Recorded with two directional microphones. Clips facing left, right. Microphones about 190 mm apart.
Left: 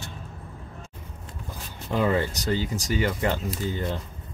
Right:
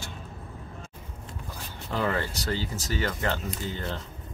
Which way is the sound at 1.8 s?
15° left (ahead or behind).